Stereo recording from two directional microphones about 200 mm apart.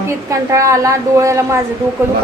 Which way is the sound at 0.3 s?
15° right (ahead or behind).